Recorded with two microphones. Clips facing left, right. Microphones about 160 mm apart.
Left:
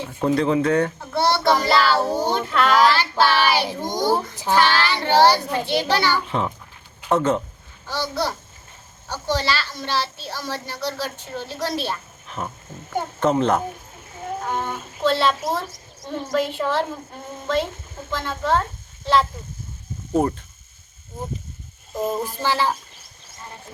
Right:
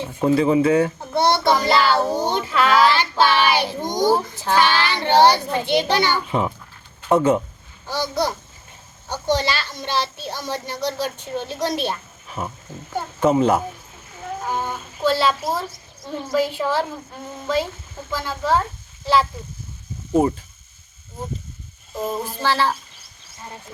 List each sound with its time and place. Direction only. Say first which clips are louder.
0.2 s a child's voice: right 3 dB; 5° right (ahead or behind)
1.1 s a child's voice: right 1 dB; 20° right (ahead or behind)
2.4 s a child's voice: right 1 dB; centre (ahead or behind)
2.9 s child singing: right 1 dB; 15° right (ahead or behind)
3.8 s a child's voice: right 2 dB; 15° right (ahead or behind)
18.1 s a child's voice: right 1 dB; 5° right (ahead or behind)
21.9 s a sound: left 1 dB; 15° left (ahead or behind)